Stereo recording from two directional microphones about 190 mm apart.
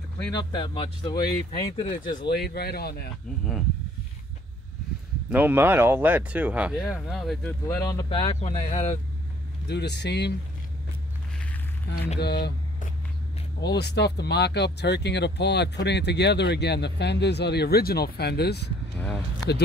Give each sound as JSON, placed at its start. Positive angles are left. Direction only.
{"t": 0.3, "sound": "speech", "side_deg": 25}
{"t": 2.0, "sound": "speech", "side_deg": 50}
{"t": 5.3, "sound": "speech", "side_deg": -10}
{"t": 7.6, "sound": "speech", "side_deg": 20}
{"t": 8.4, "sound": "speech", "side_deg": 35}
{"t": 9.7, "sound": "speech", "side_deg": 60}
{"t": 12.2, "sound": "speech", "side_deg": 60}
{"t": 13.7, "sound": "speech", "side_deg": 60}
{"t": 18.9, "sound": "speech", "side_deg": 5}